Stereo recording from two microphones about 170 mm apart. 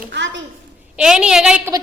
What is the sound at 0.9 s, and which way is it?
Speech, 5° right (ahead or behind).